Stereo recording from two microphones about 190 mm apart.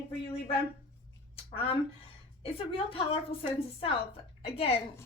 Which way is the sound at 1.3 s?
30° left (ahead or behind).